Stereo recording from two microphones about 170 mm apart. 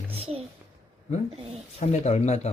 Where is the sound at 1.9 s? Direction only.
40° left (ahead or behind).